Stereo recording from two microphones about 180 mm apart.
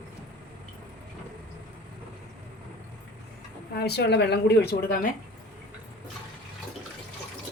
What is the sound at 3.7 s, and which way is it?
A woman's voice, 65° left (ahead or behind).